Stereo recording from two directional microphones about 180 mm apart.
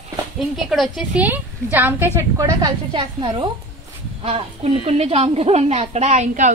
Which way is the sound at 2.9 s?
30° right (ahead or behind).